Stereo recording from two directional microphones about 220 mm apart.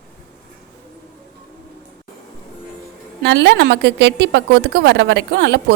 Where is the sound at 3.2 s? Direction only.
50° right (ahead or behind).